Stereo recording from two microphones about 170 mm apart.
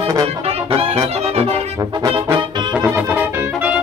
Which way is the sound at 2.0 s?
25° right (ahead or behind).